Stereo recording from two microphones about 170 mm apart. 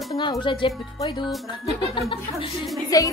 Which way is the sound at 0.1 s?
25° left (ahead or behind).